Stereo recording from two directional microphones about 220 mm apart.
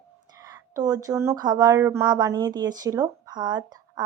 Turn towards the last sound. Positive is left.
turn(degrees=-20)  # may be behind; listen again after turning